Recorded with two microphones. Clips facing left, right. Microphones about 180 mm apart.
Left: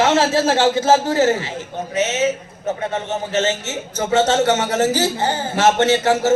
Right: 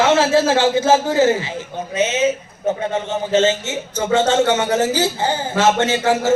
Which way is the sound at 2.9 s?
15° right (ahead or behind).